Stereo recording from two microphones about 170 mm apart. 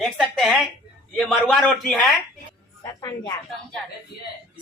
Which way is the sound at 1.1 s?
5° right (ahead or behind).